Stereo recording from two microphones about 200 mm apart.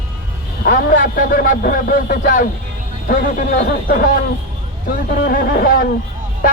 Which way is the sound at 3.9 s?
45° left (ahead or behind).